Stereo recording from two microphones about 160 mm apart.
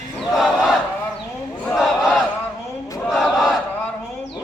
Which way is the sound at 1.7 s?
Centre (ahead or behind).